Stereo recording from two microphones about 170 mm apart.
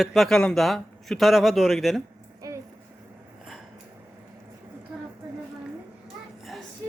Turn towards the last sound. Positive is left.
turn(degrees=0)  # may be behind; listen again after turning